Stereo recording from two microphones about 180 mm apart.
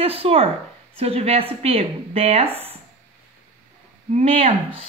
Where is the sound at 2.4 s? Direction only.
10° right (ahead or behind).